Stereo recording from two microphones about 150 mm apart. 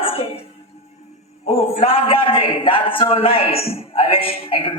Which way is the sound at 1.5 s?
40° left (ahead or behind).